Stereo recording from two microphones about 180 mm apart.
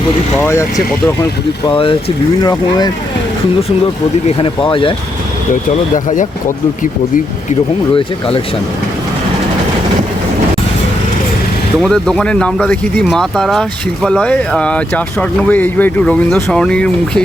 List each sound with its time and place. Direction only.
0.3 s speech: 15° left (ahead or behind)
1.6 s speech: 30° left (ahead or behind)
4.4 s speech: 30° left (ahead or behind)
11.8 s speech: 5° left (ahead or behind)